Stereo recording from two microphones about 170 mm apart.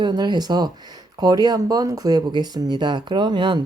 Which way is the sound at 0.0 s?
25° right (ahead or behind).